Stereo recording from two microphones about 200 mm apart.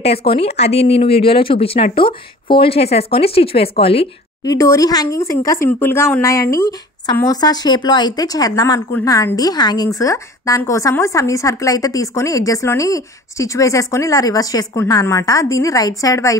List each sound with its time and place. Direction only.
0.0 s speech: 30° left (ahead or behind)
4.6 s a woman's voice: 15° left (ahead or behind)